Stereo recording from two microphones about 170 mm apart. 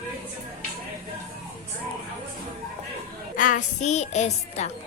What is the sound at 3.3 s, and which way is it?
A woman's voice, 50° left (ahead or behind).